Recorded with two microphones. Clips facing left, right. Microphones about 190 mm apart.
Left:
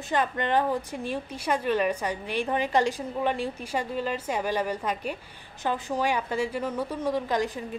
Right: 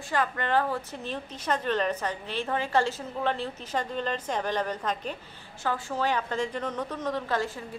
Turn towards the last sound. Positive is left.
turn(degrees=15)  # may be behind; listen again after turning